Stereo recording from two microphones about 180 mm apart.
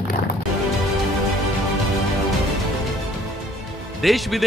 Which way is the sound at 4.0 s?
Centre (ahead or behind).